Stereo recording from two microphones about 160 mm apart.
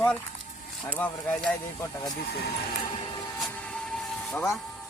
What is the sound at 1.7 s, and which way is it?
Speech, 25° left (ahead or behind).